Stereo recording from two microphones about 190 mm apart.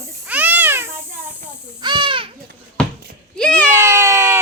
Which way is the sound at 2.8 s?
5° left (ahead or behind).